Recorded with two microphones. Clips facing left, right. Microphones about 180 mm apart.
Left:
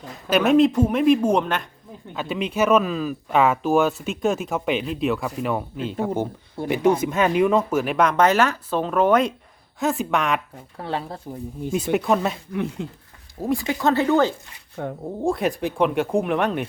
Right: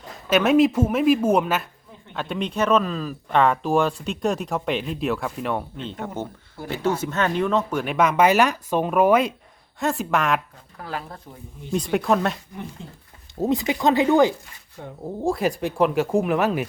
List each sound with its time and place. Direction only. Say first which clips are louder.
0.3 s speech: left 1 dB; centre (ahead or behind)
10.8 s speech: left 4 dB; 30° left (ahead or behind)
11.7 s speech: even; 5° left (ahead or behind)
12.5 s speech: left 9 dB; 75° left (ahead or behind)
13.4 s speech: right 1 dB; 20° right (ahead or behind)
14.8 s speech: left 8 dB; 60° left (ahead or behind)
15.2 s speech: even; centre (ahead or behind)